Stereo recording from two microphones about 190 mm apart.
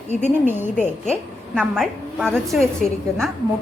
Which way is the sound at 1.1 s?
5° left (ahead or behind).